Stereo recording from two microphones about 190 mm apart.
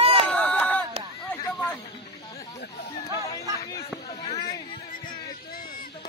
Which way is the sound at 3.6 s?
20° left (ahead or behind).